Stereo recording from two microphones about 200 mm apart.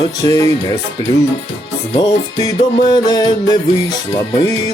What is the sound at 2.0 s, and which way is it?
Speech, 20° left (ahead or behind).